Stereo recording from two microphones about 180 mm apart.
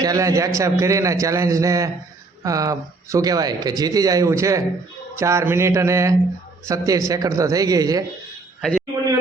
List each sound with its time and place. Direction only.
0.0 s a man's voice: 20° right (ahead or behind)